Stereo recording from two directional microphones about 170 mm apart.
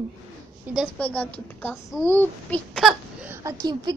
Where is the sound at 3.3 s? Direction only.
20° right (ahead or behind).